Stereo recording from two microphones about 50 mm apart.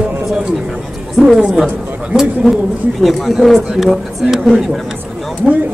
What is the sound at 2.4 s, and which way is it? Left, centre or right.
Speech, centre.